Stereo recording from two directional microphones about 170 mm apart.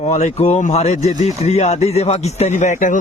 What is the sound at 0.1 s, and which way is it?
Speech, 40° left (ahead or behind).